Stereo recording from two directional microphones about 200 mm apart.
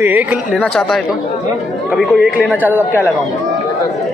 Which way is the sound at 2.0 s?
Centre (ahead or behind).